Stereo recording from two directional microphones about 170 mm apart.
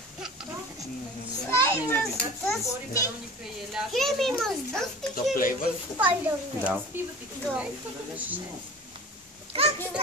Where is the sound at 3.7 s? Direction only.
Centre (ahead or behind).